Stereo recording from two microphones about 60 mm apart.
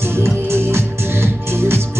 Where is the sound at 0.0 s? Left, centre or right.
Right.